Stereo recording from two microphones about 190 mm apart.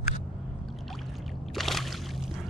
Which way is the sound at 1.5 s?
Centre (ahead or behind).